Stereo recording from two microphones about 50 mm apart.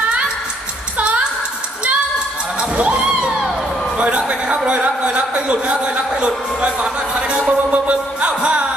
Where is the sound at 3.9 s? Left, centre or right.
Right.